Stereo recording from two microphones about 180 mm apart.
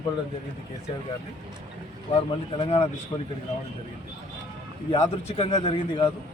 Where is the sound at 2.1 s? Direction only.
30° left (ahead or behind).